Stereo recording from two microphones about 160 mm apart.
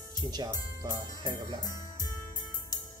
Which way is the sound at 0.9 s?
25° right (ahead or behind).